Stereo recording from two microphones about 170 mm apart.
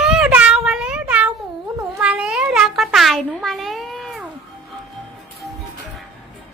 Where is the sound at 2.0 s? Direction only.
5° right (ahead or behind).